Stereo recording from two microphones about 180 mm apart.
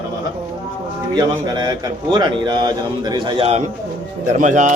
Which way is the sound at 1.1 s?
25° right (ahead or behind).